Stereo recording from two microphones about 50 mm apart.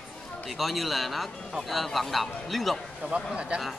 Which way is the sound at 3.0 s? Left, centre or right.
Centre.